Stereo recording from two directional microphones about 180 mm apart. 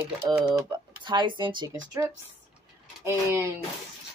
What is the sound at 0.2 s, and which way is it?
Speech, 10° right (ahead or behind).